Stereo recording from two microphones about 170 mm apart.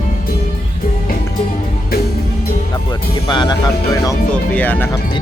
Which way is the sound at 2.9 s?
25° left (ahead or behind).